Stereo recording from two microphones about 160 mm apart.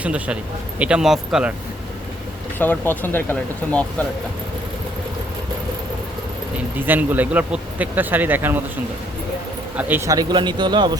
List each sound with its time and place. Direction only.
0.0 s speech: 10° right (ahead or behind)
2.6 s speech: 10° left (ahead or behind)
6.7 s speech: 10° right (ahead or behind)
9.7 s speech: 15° right (ahead or behind)